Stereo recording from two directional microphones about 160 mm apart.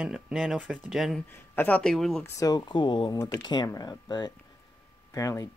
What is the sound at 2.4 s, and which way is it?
Speech, 25° left (ahead or behind).